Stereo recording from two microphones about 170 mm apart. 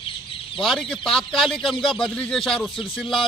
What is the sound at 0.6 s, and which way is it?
A man's voice, centre (ahead or behind).